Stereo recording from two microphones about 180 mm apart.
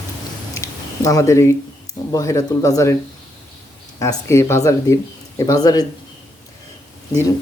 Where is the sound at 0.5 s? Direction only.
20° left (ahead or behind).